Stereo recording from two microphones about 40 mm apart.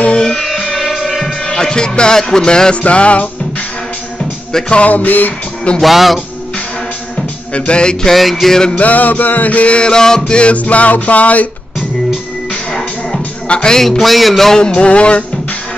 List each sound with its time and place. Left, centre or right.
0.2 s music: centre
1.4 s music: centre
2.8 s music: left
4.8 s music: left
5.8 s speech: centre
7.5 s a sound: left
8.1 s speech: centre
8.7 s music: left
13.5 s music: left
13.7 s speech: centre
14.6 s a sound: left